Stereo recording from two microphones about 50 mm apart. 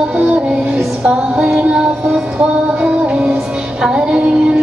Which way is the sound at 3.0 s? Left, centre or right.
Right.